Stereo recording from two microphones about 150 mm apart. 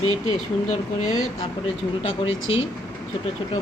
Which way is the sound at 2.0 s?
40° left (ahead or behind).